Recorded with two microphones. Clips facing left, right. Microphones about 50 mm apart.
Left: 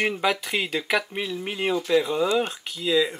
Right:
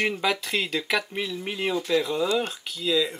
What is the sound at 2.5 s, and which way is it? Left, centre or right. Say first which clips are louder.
Speech: left 2 dB; centre.